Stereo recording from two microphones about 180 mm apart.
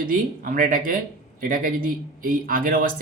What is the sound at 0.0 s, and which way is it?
Speech, 50° right (ahead or behind).